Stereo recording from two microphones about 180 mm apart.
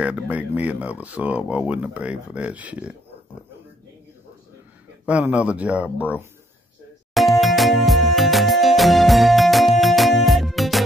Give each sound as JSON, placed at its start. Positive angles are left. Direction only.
{"t": 0.0, "sound": "speech", "side_deg": -5}
{"t": 5.0, "sound": "speech", "side_deg": -5}
{"t": 7.2, "sound": "music", "side_deg": 0}